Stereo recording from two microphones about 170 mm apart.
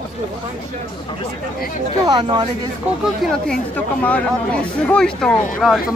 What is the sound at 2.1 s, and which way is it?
Speech, 25° right (ahead or behind).